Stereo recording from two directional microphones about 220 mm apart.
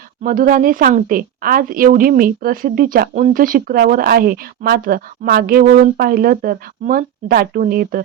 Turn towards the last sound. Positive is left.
turn(degrees=-40)  # may be behind; listen again after turning